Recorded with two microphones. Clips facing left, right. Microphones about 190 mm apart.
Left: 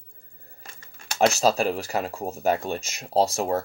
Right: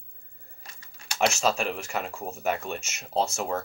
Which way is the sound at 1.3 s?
35° left (ahead or behind).